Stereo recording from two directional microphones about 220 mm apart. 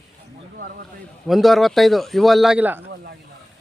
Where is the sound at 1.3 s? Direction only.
Centre (ahead or behind).